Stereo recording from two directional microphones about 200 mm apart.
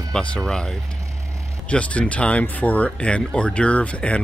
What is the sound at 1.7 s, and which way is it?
Speech, 5° left (ahead or behind).